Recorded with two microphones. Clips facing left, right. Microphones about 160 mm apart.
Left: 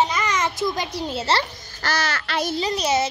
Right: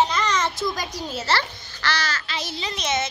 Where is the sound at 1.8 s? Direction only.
55° left (ahead or behind).